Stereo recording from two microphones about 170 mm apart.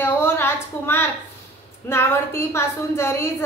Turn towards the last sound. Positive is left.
turn(degrees=15)  # may be behind; listen again after turning